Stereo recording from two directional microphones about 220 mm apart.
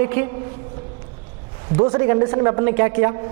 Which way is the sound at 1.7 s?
20° right (ahead or behind).